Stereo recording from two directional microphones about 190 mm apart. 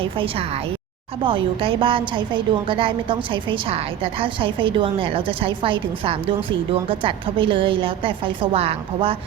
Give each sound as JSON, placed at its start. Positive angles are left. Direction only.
{"t": 0.0, "sound": "a woman's voice", "side_deg": -30}